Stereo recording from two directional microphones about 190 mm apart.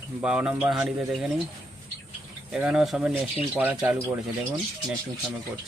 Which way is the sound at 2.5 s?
5° right (ahead or behind).